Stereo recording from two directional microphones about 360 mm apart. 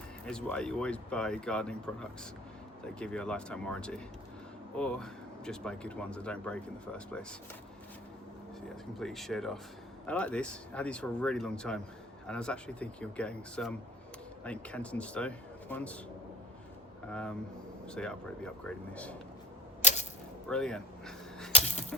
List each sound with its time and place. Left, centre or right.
0.3 s speech: centre
9.0 s speech: centre
17.1 s speech: centre
20.5 s speech: centre
21.5 s a sound: centre